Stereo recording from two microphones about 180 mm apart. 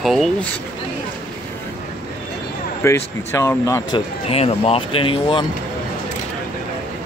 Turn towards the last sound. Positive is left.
turn(degrees=30)  # may be behind; listen again after turning